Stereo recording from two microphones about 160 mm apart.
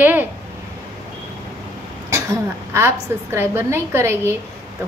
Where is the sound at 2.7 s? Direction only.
15° right (ahead or behind).